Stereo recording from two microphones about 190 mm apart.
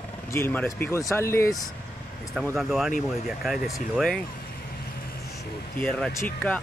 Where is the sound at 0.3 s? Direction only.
10° left (ahead or behind).